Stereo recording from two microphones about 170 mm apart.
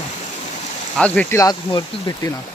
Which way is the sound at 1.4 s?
25° left (ahead or behind).